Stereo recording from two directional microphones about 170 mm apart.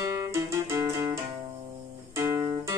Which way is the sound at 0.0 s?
15° right (ahead or behind).